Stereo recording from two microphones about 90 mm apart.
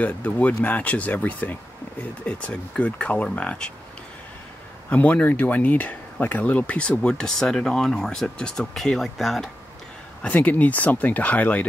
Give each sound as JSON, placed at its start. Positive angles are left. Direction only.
{"t": 0.0, "sound": "speech", "side_deg": 15}
{"t": 4.8, "sound": "speech", "side_deg": 20}
{"t": 10.2, "sound": "speech", "side_deg": 20}